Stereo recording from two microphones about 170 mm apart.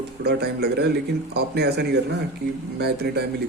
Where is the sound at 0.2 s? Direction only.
75° right (ahead or behind).